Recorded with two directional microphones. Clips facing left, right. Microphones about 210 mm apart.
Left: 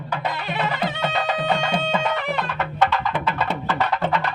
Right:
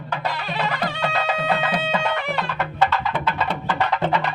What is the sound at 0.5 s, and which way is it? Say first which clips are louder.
Music: left 1 dB; 20° left (ahead or behind).